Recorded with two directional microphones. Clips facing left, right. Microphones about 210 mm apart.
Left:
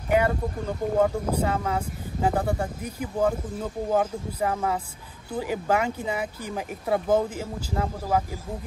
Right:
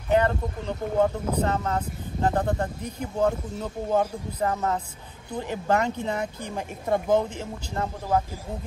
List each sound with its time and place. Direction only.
0.1 s speech: 10° left (ahead or behind)